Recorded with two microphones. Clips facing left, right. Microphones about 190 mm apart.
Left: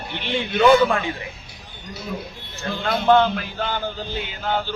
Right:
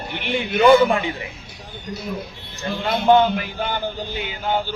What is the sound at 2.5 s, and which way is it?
A man's voice, 15° right (ahead or behind).